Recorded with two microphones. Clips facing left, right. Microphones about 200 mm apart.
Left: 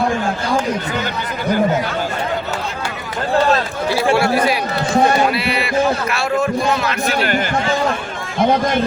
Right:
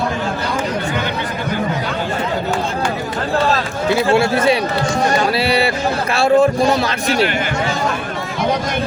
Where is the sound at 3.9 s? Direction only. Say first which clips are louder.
Right 1 dB; 25° right (ahead or behind).